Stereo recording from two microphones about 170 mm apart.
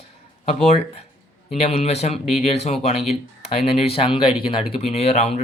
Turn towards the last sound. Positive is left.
turn(degrees=35)  # may be behind; listen again after turning